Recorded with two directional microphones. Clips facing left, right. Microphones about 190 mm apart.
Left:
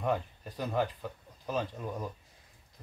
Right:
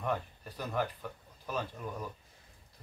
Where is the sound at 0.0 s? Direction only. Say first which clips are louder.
Left 3 dB; 15° left (ahead or behind).